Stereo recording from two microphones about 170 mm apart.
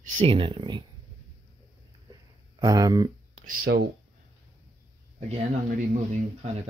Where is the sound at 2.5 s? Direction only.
20° right (ahead or behind).